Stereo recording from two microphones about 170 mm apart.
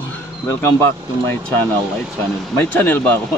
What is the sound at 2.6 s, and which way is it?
Speech, 10° left (ahead or behind).